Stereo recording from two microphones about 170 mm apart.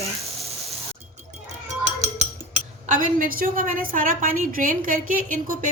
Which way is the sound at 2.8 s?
50° right (ahead or behind).